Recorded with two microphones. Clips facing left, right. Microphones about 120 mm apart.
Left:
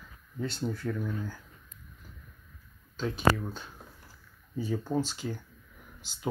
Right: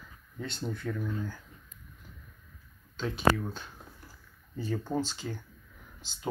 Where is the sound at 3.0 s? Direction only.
Centre (ahead or behind).